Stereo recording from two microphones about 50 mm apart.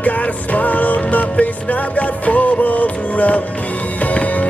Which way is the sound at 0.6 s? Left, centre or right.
Left.